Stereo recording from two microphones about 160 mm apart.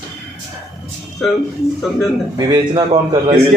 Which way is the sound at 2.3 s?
25° right (ahead or behind).